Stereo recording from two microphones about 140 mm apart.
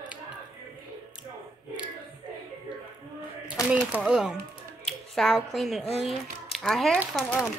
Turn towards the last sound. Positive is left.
turn(degrees=0)  # may be behind; listen again after turning